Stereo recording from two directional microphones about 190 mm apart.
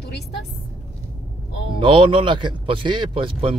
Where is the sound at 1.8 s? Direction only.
25° right (ahead or behind).